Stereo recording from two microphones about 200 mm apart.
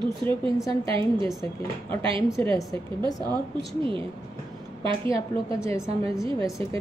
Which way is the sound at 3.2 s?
25° right (ahead or behind).